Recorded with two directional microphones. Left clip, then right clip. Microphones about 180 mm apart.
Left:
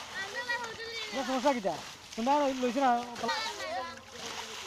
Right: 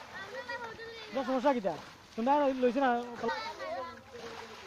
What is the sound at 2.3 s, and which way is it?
Speech, 15° right (ahead or behind).